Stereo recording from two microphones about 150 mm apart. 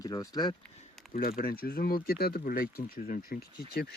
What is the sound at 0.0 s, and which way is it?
Speech, 25° left (ahead or behind).